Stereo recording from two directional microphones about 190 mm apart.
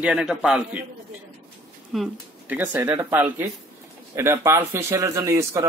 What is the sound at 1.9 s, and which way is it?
A woman's voice, 5° right (ahead or behind).